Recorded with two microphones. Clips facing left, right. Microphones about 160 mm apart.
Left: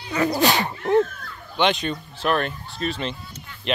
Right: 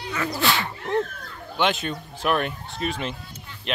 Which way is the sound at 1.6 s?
5° right (ahead or behind).